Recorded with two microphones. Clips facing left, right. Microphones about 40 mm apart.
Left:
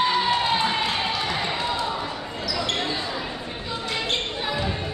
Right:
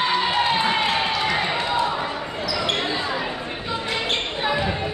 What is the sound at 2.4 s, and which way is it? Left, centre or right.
Basketball bounce, right.